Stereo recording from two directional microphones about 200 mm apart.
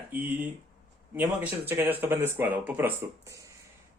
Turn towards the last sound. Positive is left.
turn(degrees=-10)  # may be behind; listen again after turning